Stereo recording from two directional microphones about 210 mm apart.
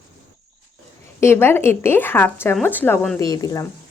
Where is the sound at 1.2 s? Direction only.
10° left (ahead or behind).